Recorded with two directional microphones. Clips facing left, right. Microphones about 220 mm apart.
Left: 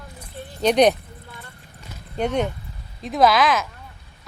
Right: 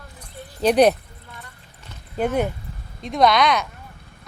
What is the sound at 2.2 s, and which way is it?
A woman's voice, 5° right (ahead or behind).